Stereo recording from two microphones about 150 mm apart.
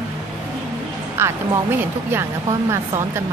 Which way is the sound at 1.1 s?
15° right (ahead or behind).